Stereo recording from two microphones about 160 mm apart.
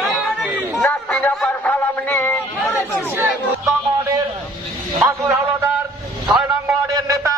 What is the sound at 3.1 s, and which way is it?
Speech, 20° right (ahead or behind).